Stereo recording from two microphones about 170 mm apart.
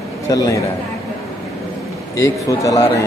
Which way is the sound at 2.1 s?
20° left (ahead or behind).